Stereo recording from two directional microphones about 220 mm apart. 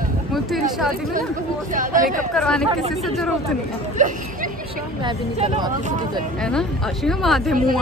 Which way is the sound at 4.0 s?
35° right (ahead or behind).